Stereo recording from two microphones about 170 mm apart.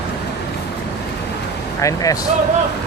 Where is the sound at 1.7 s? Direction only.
20° left (ahead or behind).